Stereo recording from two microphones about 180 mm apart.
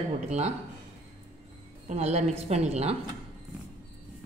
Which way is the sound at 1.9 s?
35° right (ahead or behind).